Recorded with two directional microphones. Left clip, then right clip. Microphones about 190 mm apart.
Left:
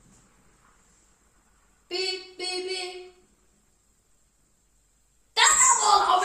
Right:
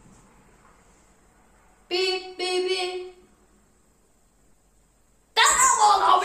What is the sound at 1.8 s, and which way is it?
Music, 10° left (ahead or behind).